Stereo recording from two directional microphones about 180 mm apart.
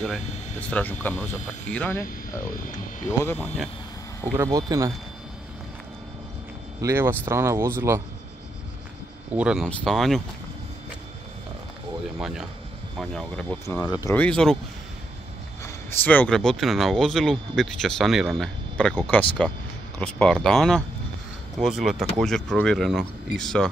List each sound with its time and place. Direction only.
0.0 s speech: 5° left (ahead or behind)
4.2 s speech: 20° right (ahead or behind)
6.8 s speech: 15° right (ahead or behind)
9.4 s speech: 5° right (ahead or behind)
12.2 s speech: centre (ahead or behind)
13.7 s speech: 20° left (ahead or behind)
14.1 s speech: 5° left (ahead or behind)
15.6 s speech: 10° left (ahead or behind)